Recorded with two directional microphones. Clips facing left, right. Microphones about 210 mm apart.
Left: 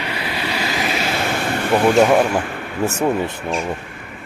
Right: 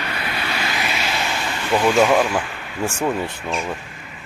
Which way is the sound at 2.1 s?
50° left (ahead or behind).